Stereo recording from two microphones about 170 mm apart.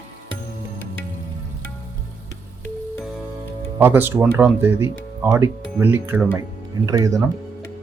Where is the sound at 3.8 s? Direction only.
10° right (ahead or behind).